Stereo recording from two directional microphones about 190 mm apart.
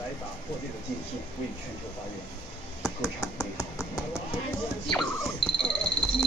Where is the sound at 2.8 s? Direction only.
15° left (ahead or behind).